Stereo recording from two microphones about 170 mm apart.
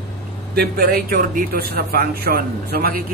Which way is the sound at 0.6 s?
60° right (ahead or behind).